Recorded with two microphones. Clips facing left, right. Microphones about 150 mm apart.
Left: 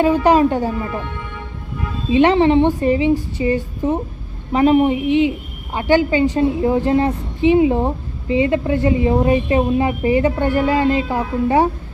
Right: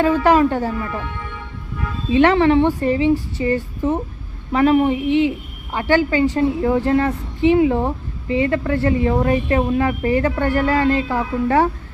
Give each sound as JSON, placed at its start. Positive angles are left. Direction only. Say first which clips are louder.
{"t": 0.0, "sound": "a woman's voice", "louder": "left 1 dB", "side_deg": 20}
{"t": 2.0, "sound": "a woman's voice", "louder": "left 1 dB", "side_deg": 20}